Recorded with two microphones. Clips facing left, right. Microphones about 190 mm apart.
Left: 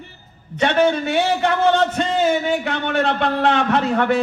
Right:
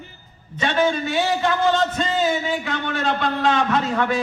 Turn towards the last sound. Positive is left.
turn(degrees=60)  # may be behind; listen again after turning